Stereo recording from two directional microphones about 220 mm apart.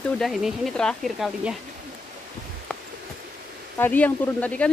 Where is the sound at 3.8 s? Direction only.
10° left (ahead or behind).